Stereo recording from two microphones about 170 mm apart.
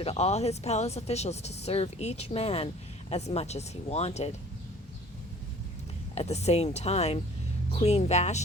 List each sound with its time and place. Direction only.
0.0 s speech: 40° left (ahead or behind)
6.1 s speech: 40° left (ahead or behind)